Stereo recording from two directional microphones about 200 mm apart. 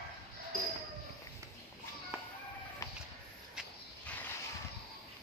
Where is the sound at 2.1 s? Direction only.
5° right (ahead or behind).